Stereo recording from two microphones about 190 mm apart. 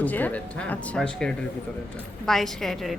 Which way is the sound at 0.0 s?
10° left (ahead or behind).